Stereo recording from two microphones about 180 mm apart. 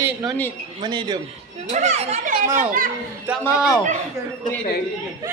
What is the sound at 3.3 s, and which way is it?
Speech, 10° right (ahead or behind).